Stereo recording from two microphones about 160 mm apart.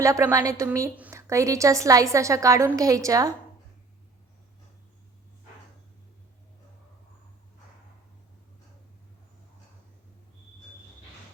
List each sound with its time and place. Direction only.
0.0 s a woman's voice: 20° right (ahead or behind)